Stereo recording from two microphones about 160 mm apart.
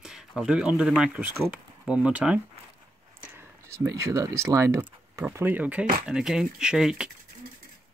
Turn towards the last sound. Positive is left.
turn(degrees=-5)  # may be behind; listen again after turning